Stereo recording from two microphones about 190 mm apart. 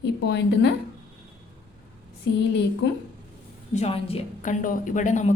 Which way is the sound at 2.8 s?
70° left (ahead or behind).